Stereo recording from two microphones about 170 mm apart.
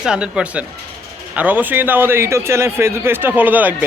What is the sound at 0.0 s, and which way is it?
A man's voice, 5° right (ahead or behind).